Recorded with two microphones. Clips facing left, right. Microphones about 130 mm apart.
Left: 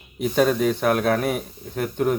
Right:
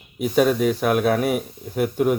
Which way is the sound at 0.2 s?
5° right (ahead or behind).